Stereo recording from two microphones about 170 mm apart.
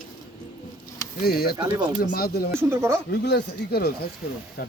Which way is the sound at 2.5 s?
15° right (ahead or behind).